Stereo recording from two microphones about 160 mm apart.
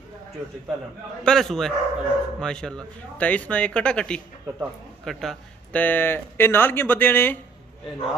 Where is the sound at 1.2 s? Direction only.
5° left (ahead or behind).